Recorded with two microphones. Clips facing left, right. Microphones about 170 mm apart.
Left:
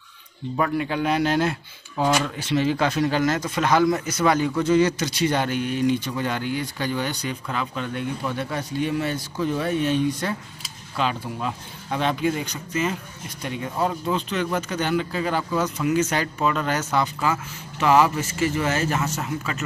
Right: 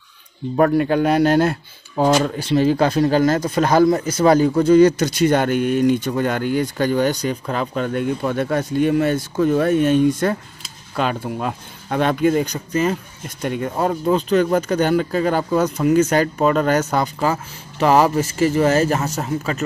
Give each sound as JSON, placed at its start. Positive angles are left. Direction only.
{"t": 0.6, "sound": "speech", "side_deg": -45}
{"t": 13.4, "sound": "speech", "side_deg": -50}